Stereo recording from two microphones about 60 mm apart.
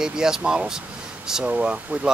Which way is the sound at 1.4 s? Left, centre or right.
Right.